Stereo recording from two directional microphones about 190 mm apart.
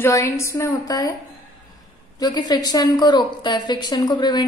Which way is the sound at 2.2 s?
20° left (ahead or behind).